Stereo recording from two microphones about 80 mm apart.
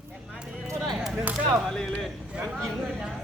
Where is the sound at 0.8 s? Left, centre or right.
Centre.